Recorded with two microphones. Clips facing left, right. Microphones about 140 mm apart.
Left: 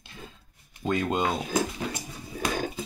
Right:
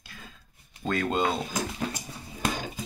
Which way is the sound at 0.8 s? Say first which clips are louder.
Even; 15° left (ahead or behind).